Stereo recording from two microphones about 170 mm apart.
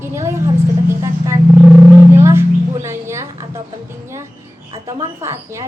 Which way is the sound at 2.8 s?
15° right (ahead or behind).